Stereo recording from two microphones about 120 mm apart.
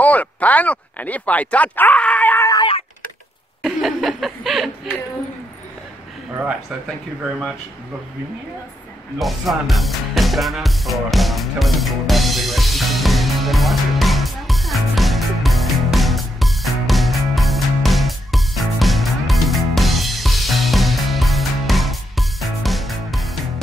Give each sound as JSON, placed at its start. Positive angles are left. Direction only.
{"t": 0.0, "sound": "speech", "side_deg": 10}
{"t": 3.6, "sound": "speech", "side_deg": 0}
{"t": 9.2, "sound": "music", "side_deg": 0}